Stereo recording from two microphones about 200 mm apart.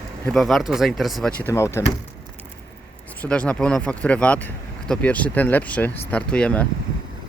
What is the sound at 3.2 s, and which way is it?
Speech, 5° left (ahead or behind).